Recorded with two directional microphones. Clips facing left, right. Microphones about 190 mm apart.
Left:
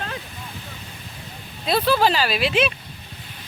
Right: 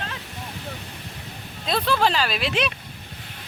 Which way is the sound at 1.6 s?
5° left (ahead or behind).